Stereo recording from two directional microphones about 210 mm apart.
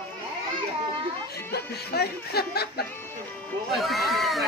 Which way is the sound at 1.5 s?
50° left (ahead or behind).